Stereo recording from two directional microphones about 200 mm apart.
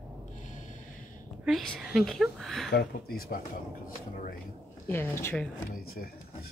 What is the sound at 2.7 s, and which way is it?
Speech, 50° left (ahead or behind).